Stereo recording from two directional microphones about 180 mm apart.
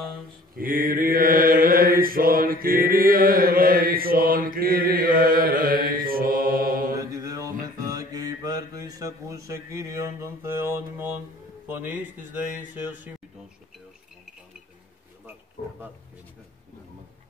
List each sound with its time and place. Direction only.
0.6 s mantra: 50° right (ahead or behind)
7.0 s mantra: 20° right (ahead or behind)
11.6 s a man's voice: 10° right (ahead or behind)
12.4 s music: 10° right (ahead or behind)